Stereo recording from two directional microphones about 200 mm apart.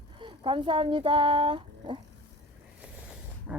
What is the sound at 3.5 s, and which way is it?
Dog, 5° right (ahead or behind).